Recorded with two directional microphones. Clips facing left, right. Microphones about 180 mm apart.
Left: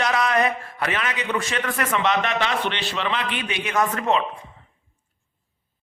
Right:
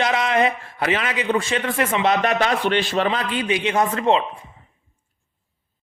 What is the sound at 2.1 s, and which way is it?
A man's voice, 40° right (ahead or behind).